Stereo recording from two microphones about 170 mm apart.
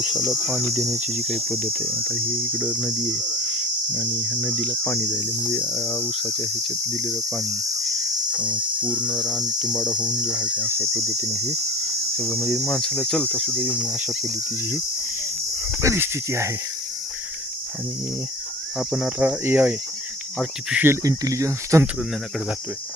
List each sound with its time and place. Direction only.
0.0 s speech: centre (ahead or behind)
4.4 s cricket: 10° right (ahead or behind)
4.8 s cricket: 10° left (ahead or behind); by 9.1 s 5° right (ahead or behind)
9.2 s speech: 5° right (ahead or behind)
10.1 s cricket: 5° right (ahead or behind)
10.9 s speech: centre (ahead or behind)
15.8 s cricket: 15° right (ahead or behind)
18.8 s cricket: 5° right (ahead or behind)